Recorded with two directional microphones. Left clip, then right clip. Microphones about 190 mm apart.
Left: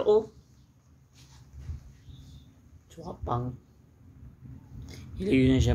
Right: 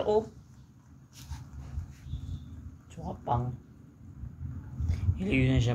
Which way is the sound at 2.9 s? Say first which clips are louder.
Right 1 dB; 30° left (ahead or behind).